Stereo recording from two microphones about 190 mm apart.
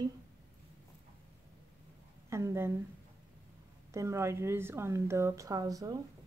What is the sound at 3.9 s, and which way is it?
A woman's voice, 15° right (ahead or behind).